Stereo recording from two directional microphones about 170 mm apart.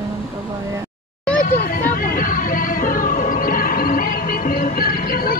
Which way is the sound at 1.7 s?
55° left (ahead or behind).